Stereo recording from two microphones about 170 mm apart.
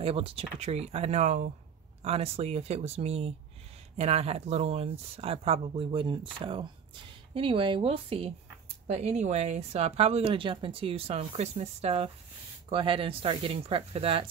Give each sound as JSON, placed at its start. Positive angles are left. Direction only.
{"t": 0.0, "sound": "a woman's voice", "side_deg": -35}